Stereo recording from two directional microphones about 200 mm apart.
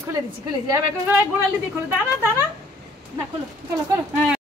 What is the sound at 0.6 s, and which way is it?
Speech, 15° right (ahead or behind).